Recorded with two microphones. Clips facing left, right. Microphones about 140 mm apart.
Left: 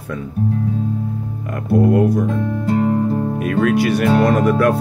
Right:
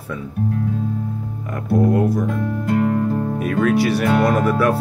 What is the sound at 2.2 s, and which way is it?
Speech, 25° left (ahead or behind).